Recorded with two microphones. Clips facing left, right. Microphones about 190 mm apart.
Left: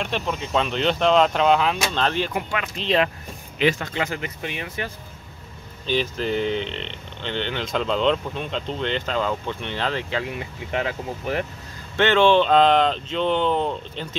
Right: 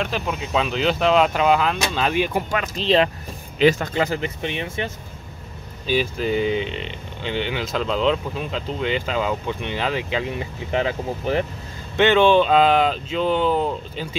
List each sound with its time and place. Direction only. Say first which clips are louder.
0.0 s speech: right 1 dB; 5° right (ahead or behind)
2.3 s speech: right 3 dB; 40° right (ahead or behind)
5.9 s speech: right 2 dB; 10° right (ahead or behind)
10.3 s speech: right 3 dB; 30° right (ahead or behind)
12.0 s speech: right 2 dB; 15° right (ahead or behind)